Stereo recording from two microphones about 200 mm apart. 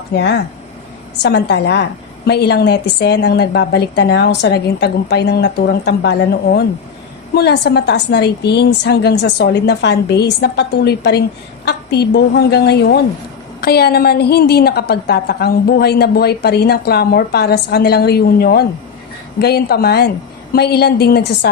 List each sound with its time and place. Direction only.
0.2 s a woman's voice: 60° left (ahead or behind)